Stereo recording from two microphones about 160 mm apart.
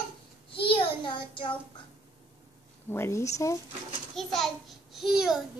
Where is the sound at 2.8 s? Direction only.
15° left (ahead or behind).